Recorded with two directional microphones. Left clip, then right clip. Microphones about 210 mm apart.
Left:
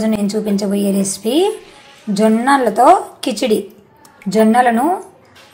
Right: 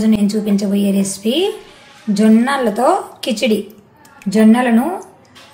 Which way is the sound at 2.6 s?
15° left (ahead or behind).